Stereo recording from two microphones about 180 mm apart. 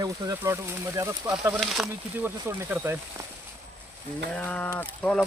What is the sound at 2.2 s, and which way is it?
Speech, 10° right (ahead or behind).